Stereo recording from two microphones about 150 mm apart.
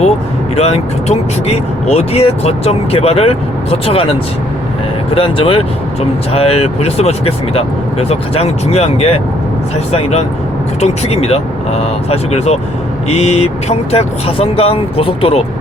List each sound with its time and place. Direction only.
0.5 s speech: 45° left (ahead or behind)
5.1 s speech: 35° left (ahead or behind)